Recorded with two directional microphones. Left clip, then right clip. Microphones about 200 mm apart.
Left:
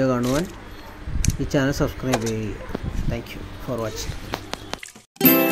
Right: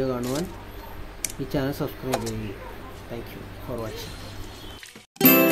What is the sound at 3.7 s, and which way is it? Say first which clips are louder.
Speech: left 5 dB; 40° left (ahead or behind).